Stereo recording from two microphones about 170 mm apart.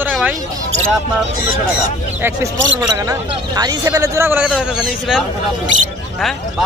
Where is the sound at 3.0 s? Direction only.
20° right (ahead or behind); by 5.2 s centre (ahead or behind).